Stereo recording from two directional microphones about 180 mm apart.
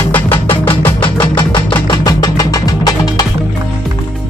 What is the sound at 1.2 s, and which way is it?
Music, 25° left (ahead or behind).